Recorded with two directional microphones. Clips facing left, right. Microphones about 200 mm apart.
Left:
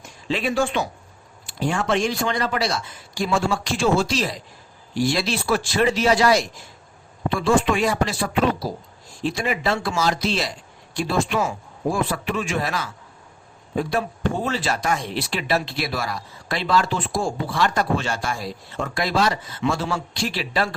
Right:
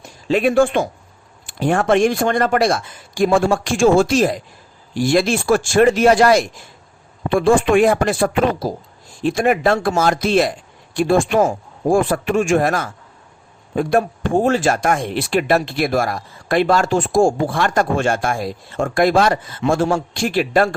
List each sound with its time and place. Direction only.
0.0 s speech: 45° right (ahead or behind)